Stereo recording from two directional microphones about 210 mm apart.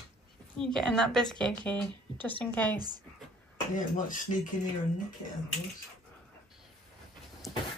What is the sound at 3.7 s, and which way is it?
Speech, 40° left (ahead or behind).